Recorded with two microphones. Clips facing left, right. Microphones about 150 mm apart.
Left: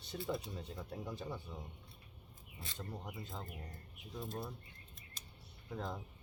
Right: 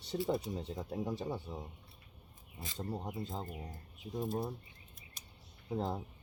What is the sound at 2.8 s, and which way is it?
Speech, 35° right (ahead or behind).